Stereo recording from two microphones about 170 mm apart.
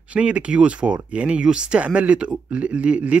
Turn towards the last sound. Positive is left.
turn(degrees=-5)  # may be behind; listen again after turning